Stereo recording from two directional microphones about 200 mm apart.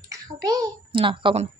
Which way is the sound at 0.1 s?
20° right (ahead or behind).